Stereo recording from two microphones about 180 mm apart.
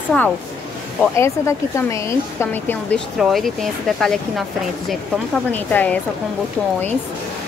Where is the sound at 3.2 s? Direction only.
Centre (ahead or behind).